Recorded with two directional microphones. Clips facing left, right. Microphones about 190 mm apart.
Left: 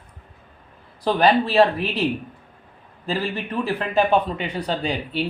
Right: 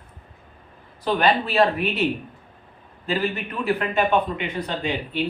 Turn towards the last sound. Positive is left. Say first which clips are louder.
# even
turn(degrees=35)  # may be behind; listen again after turning